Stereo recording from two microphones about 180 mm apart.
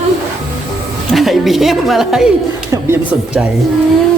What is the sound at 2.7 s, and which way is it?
Speech, 15° right (ahead or behind).